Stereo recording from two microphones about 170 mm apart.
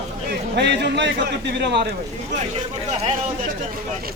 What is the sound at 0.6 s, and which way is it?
A man's voice, 90° right.